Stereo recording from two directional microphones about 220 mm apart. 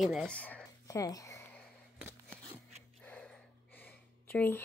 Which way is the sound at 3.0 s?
5° left (ahead or behind).